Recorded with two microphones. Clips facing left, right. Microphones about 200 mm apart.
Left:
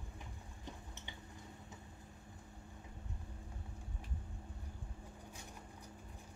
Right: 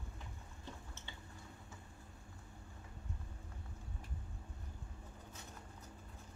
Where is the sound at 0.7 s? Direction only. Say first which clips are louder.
Left 1 dB; 15° left (ahead or behind).